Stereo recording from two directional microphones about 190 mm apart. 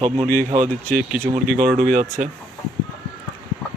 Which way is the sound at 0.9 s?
5° left (ahead or behind).